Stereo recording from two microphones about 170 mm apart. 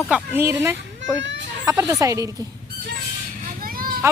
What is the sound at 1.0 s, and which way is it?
Children playing, 90° right.